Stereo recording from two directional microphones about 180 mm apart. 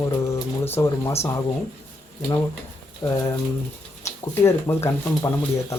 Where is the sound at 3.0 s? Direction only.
20° left (ahead or behind).